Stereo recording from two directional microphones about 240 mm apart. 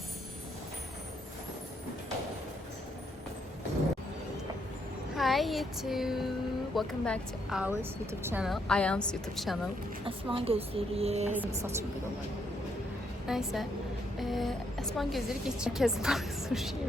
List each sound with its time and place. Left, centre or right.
5.1 s speech: centre
10.1 s speech: right
11.3 s speech: centre
13.2 s a woman's voice: centre